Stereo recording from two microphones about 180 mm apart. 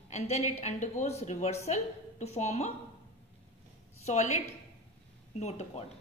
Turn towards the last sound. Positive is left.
turn(degrees=35)  # may be behind; listen again after turning